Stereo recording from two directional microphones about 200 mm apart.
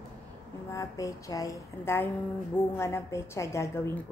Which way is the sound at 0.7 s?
15° left (ahead or behind).